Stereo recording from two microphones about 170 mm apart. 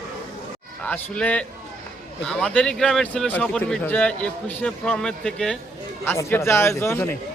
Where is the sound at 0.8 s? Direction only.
10° left (ahead or behind).